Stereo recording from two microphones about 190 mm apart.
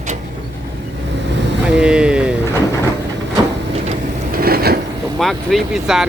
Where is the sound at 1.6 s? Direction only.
5° right (ahead or behind).